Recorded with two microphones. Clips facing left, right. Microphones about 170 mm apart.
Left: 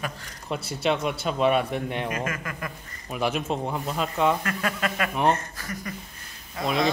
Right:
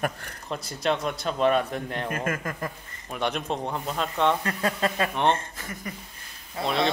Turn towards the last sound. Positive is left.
turn(degrees=0)  # may be behind; listen again after turning